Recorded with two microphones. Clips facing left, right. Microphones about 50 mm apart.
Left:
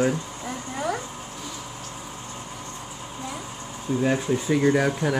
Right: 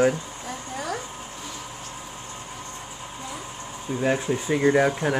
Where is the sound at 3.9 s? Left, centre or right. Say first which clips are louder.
Even; centre.